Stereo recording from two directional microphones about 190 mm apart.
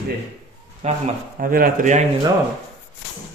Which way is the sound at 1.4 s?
50° right (ahead or behind).